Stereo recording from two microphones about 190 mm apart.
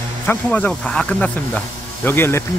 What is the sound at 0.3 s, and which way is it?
Speech, 10° left (ahead or behind).